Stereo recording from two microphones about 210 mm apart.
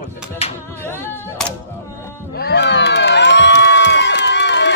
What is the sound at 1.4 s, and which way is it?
Speech, 5° left (ahead or behind).